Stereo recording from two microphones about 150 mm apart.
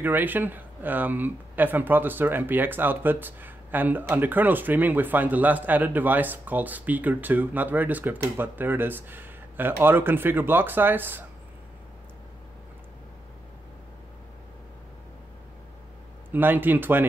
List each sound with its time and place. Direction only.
0.0 s speech: 10° right (ahead or behind)
16.3 s speech: 15° right (ahead or behind)